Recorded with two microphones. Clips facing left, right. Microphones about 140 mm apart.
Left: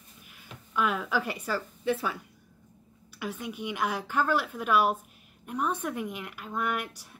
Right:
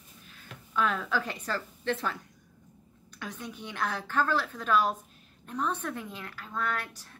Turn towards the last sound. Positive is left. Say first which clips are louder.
# left 2 dB
turn(degrees=15)  # may be behind; listen again after turning